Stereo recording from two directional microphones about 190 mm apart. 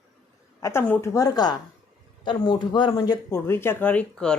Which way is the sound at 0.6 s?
10° left (ahead or behind).